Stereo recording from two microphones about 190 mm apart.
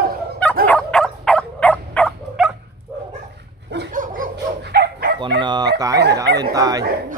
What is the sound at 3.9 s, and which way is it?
Dog, 45° right (ahead or behind).